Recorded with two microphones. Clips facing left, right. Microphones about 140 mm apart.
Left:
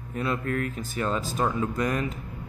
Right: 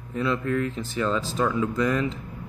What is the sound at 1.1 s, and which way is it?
Speech, 50° left (ahead or behind).